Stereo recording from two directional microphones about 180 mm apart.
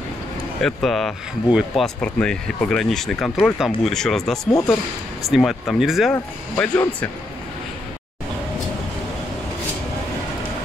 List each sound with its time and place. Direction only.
0.6 s speech: centre (ahead or behind)
4.5 s speech: 20° left (ahead or behind)
5.3 s speech: centre (ahead or behind)